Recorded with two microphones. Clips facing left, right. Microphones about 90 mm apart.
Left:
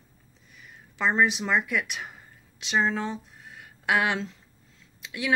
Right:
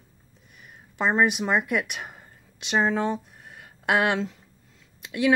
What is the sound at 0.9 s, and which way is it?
Speech, 15° right (ahead or behind).